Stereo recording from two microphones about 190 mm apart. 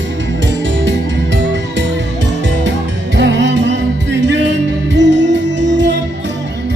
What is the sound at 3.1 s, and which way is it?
Music, 65° right (ahead or behind).